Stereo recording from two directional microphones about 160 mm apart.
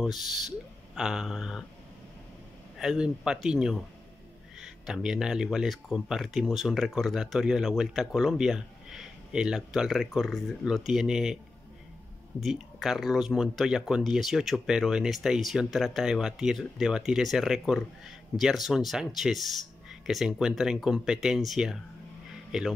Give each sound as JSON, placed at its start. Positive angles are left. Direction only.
{"t": 0.0, "sound": "speech", "side_deg": 0}
{"t": 2.8, "sound": "speech", "side_deg": -5}
{"t": 12.4, "sound": "speech", "side_deg": 0}